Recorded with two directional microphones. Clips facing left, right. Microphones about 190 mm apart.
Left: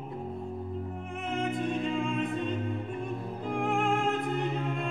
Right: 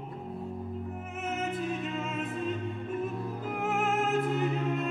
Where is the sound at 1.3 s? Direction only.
5° right (ahead or behind).